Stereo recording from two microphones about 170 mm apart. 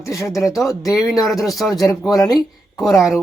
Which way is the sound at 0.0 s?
20° left (ahead or behind).